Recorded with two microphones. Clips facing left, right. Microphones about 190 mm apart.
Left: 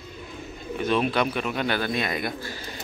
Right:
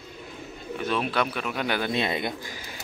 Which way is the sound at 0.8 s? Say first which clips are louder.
Left 3 dB; centre (ahead or behind).